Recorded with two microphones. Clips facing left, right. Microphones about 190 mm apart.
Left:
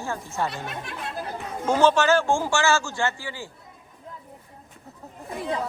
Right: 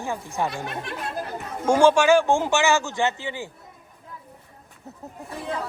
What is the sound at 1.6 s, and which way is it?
Speech, 10° right (ahead or behind).